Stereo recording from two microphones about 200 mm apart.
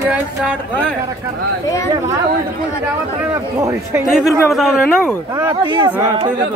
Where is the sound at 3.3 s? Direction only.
15° right (ahead or behind).